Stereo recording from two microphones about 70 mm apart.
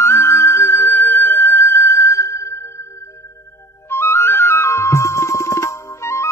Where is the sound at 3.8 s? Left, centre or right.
Left.